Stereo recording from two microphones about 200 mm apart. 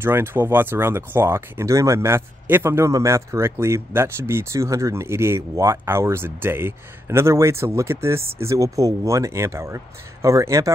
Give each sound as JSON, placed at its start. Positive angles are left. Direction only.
{"t": 0.0, "sound": "speech", "side_deg": -10}